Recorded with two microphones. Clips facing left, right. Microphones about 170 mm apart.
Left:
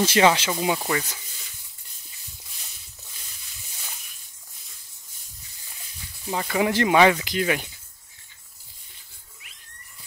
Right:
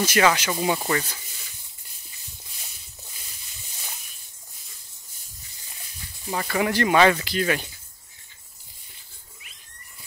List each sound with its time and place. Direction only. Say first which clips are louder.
0.0 s speech: left 2 dB; 25° left (ahead or behind)
0.5 s speech: even; 10° left (ahead or behind)
6.3 s speech: left 1 dB; 15° left (ahead or behind)